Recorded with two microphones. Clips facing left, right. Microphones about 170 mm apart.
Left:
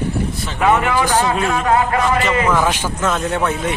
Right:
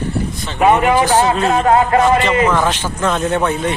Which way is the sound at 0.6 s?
20° right (ahead or behind).